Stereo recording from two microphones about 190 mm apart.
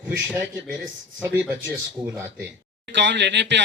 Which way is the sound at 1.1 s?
10° right (ahead or behind).